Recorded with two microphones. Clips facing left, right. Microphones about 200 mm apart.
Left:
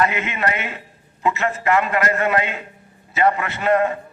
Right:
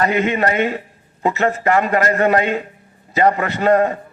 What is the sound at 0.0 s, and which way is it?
A man's voice, 35° right (ahead or behind).